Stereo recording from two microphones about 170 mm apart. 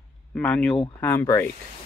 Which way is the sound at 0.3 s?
5° left (ahead or behind).